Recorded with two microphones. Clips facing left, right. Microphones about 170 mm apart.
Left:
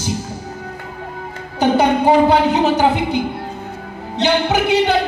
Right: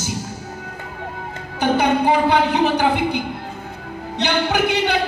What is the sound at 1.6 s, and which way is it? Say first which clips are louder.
A woman's voice: left 3 dB; 35° left (ahead or behind).